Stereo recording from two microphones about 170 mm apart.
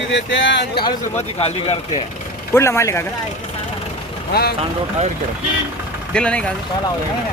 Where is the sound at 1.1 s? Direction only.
40° left (ahead or behind).